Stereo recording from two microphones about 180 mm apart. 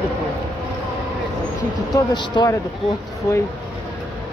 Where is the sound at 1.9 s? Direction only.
25° left (ahead or behind).